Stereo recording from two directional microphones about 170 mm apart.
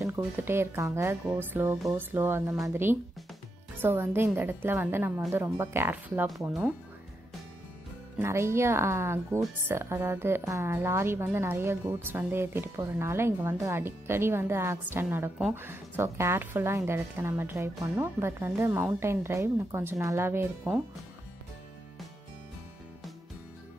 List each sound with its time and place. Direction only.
0.0 s a woman's voice: 15° right (ahead or behind)
8.2 s a woman's voice: 15° right (ahead or behind)